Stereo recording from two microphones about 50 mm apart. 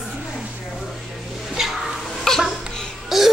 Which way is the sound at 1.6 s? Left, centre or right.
Centre.